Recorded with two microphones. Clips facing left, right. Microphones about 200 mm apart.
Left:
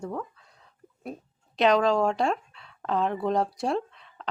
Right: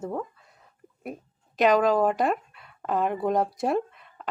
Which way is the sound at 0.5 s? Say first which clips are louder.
Right 1 dB; 5° right (ahead or behind).